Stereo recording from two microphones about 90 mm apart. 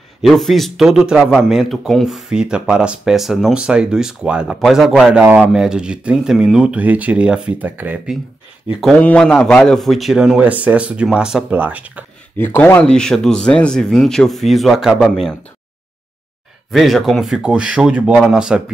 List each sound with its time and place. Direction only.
0.2 s speech: centre (ahead or behind); by 8.0 s 20° right (ahead or behind)
8.9 s a man's voice: 10° left (ahead or behind); by 11.4 s 5° right (ahead or behind)
11.5 s speech: 20° right (ahead or behind)
12.4 s speech: 25° left (ahead or behind)
12.9 s speech: 5° left (ahead or behind)
16.7 s speech: centre (ahead or behind)